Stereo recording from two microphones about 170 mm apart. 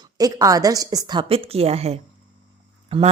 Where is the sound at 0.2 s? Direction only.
20° right (ahead or behind).